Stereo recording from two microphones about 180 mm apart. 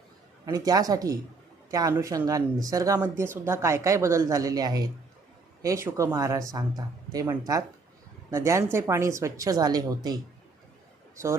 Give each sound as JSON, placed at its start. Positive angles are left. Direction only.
{"t": 0.4, "sound": "speech", "side_deg": -20}